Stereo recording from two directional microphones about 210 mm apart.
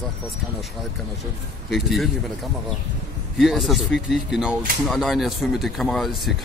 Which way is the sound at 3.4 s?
Centre (ahead or behind).